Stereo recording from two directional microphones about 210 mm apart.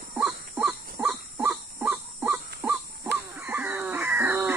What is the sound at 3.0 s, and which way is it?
Caw, 10° right (ahead or behind).